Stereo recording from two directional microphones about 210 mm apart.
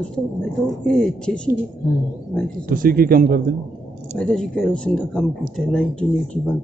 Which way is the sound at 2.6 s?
45° right (ahead or behind).